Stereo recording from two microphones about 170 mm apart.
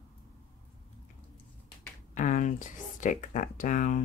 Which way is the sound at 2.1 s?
50° left (ahead or behind).